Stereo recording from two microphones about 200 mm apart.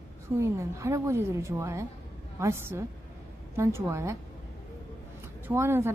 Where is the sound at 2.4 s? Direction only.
10° right (ahead or behind).